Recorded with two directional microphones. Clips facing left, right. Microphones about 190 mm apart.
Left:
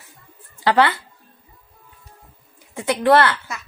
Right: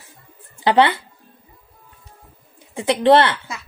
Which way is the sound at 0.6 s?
20° right (ahead or behind).